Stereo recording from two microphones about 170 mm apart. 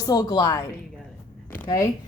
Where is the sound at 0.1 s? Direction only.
25° left (ahead or behind).